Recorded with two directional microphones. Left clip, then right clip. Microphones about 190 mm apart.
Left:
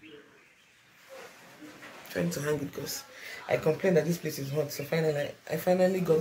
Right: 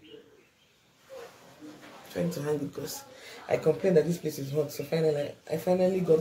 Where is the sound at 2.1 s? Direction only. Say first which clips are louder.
Even; 10° left (ahead or behind).